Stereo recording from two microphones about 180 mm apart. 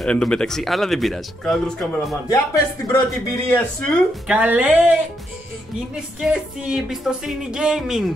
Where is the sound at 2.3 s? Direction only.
20° left (ahead or behind).